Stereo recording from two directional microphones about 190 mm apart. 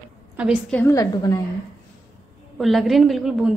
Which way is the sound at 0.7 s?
10° left (ahead or behind).